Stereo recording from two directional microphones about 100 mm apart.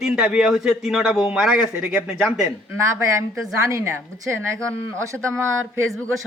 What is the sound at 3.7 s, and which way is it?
Speech, 30° right (ahead or behind).